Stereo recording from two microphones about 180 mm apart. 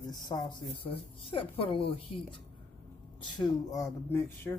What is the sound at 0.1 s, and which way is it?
Speech, 25° left (ahead or behind).